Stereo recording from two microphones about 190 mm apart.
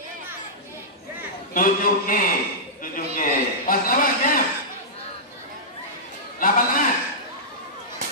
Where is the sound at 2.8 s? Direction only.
45° left (ahead or behind).